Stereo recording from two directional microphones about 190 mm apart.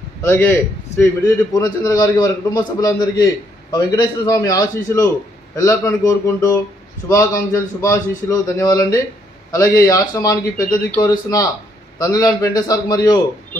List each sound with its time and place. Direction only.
0.2 s a man's voice: 10° left (ahead or behind)